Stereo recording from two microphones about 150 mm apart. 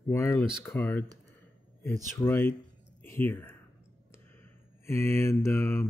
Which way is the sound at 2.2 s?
15° left (ahead or behind).